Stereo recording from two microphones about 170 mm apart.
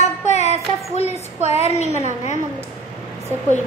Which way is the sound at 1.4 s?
40° left (ahead or behind).